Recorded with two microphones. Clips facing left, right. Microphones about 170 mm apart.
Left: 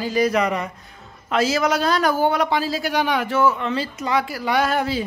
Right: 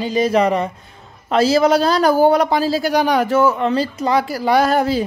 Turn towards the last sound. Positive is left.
turn(degrees=-40)  # may be behind; listen again after turning